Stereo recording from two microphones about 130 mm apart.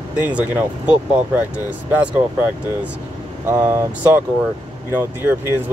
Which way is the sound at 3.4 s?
20° right (ahead or behind).